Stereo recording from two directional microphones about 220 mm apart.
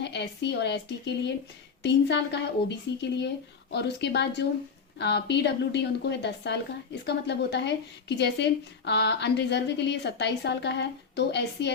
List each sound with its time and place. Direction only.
0.0 s speech: 50° left (ahead or behind)
1.8 s speech: 50° left (ahead or behind)